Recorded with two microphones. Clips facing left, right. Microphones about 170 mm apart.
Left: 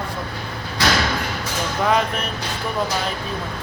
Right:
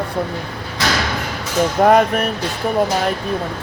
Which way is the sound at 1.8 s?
50° right (ahead or behind).